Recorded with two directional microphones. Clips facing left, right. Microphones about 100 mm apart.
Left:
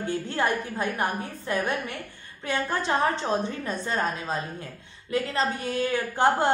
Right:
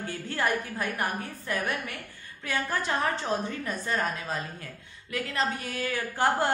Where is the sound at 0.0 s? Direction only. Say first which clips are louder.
Left 3 dB; 25° left (ahead or behind).